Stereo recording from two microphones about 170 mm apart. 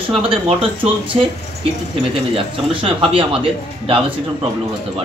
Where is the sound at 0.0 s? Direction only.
35° right (ahead or behind).